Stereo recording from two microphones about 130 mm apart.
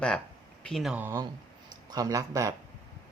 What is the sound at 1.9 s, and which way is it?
Speech, 30° right (ahead or behind).